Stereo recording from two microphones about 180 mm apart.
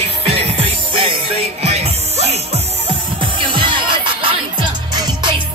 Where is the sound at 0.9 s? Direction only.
35° right (ahead or behind).